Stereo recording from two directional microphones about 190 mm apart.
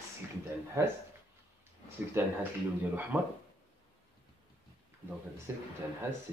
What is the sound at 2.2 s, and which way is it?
Speech, 10° right (ahead or behind).